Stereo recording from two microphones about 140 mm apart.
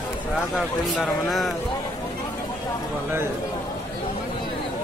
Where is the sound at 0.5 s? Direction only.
Centre (ahead or behind).